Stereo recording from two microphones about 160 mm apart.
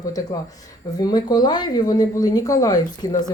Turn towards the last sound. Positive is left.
turn(degrees=25)  # may be behind; listen again after turning